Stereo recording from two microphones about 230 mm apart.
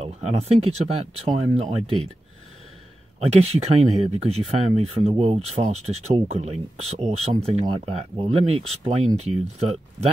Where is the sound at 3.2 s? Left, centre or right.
Right.